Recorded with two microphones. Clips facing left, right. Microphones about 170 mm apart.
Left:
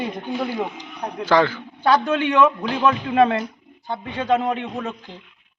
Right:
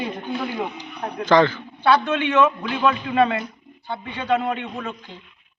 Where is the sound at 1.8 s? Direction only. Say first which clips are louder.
Left 1 dB; 40° left (ahead or behind).